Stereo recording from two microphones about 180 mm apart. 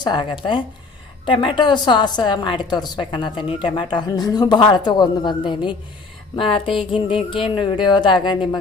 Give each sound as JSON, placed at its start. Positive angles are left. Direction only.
{"t": 0.0, "sound": "a woman's voice", "side_deg": 25}